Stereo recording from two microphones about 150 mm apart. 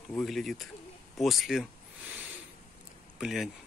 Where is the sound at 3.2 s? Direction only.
Centre (ahead or behind).